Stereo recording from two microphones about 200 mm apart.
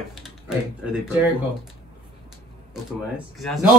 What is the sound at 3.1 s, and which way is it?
Speech, centre (ahead or behind).